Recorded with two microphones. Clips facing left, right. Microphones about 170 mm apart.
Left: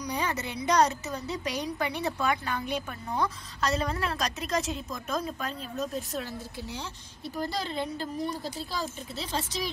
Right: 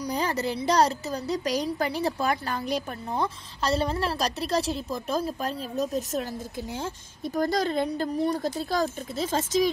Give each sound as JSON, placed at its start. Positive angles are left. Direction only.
{"t": 0.0, "sound": "a woman's voice", "side_deg": -35}